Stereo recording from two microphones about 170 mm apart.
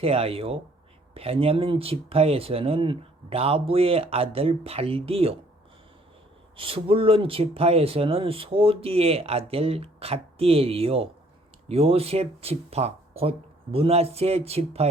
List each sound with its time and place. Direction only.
0.0 s speech: 35° right (ahead or behind)
6.6 s speech: 35° right (ahead or behind)